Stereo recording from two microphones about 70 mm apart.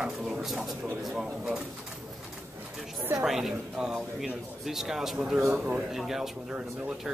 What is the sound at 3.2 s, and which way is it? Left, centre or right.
Speech, centre.